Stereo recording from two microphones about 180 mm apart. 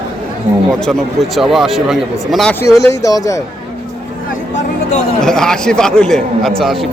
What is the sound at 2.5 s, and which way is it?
Speech, 15° left (ahead or behind).